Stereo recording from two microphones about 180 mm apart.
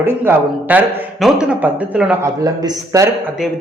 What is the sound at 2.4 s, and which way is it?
Speech, 20° right (ahead or behind).